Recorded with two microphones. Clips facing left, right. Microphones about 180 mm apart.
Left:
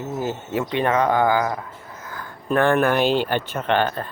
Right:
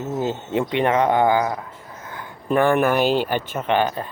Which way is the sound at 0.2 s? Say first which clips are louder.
Right 2 dB; 20° right (ahead or behind).